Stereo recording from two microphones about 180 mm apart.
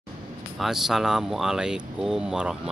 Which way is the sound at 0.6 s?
Centre (ahead or behind).